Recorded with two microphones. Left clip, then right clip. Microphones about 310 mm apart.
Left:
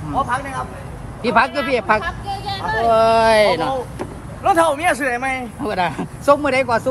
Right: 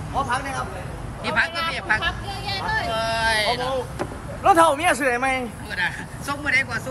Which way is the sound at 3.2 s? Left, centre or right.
Centre.